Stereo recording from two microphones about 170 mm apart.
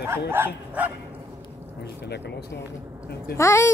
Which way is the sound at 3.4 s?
15° left (ahead or behind).